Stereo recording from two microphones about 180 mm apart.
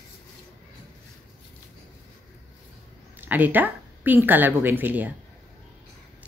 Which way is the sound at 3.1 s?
10° right (ahead or behind).